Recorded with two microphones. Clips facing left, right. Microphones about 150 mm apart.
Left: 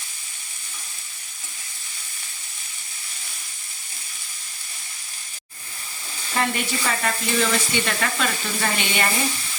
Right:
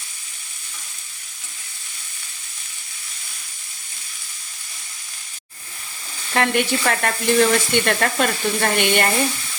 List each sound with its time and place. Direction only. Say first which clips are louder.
6.3 s sizzle: right 5 dB; 65° right (ahead or behind)